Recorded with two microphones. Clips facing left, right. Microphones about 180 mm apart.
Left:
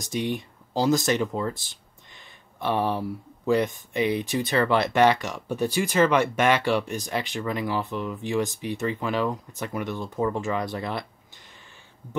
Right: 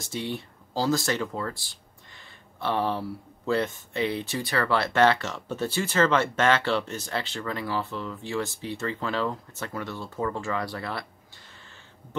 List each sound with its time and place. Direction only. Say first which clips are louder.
0.0 s speech: left 4 dB; 15° left (ahead or behind)